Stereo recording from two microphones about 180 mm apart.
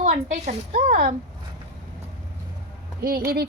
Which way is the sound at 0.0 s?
45° right (ahead or behind).